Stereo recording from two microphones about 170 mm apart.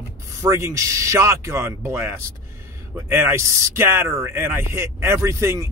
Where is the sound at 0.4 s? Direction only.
15° right (ahead or behind).